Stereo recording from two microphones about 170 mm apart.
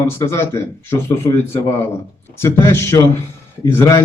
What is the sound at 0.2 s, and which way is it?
A man's voice, 15° left (ahead or behind).